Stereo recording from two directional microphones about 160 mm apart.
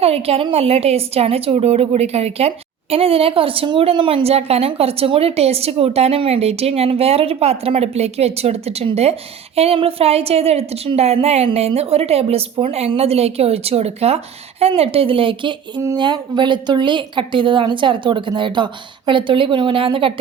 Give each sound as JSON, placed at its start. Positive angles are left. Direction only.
{"t": 0.0, "sound": "a woman's voice", "side_deg": -40}